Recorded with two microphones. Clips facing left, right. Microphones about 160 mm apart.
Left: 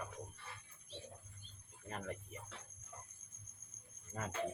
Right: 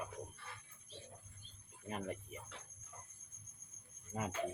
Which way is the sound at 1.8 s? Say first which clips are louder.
Right 2 dB; 15° right (ahead or behind).